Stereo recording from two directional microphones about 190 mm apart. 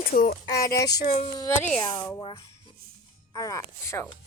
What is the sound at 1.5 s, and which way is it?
Speech, 10° left (ahead or behind).